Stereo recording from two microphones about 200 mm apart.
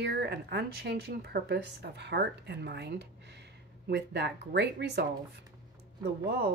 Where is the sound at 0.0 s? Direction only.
55° right (ahead or behind).